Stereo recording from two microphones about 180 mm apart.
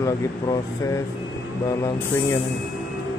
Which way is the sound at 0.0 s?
15° left (ahead or behind).